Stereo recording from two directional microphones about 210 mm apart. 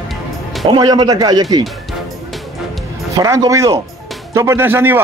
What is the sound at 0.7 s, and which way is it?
Speech, 20° right (ahead or behind).